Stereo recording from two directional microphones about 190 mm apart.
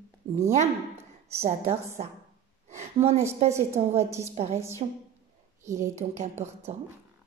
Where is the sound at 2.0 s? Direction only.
40° right (ahead or behind).